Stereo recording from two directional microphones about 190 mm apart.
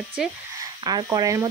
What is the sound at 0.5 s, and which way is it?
Speech, 20° right (ahead or behind).